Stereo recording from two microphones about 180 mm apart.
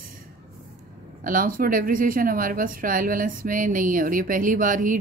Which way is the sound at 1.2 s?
50° right (ahead or behind).